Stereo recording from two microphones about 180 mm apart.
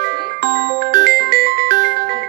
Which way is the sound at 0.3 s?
55° right (ahead or behind).